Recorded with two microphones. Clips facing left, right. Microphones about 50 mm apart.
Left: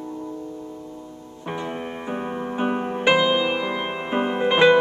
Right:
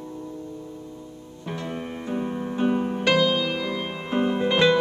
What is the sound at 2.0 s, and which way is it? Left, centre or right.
Music, left.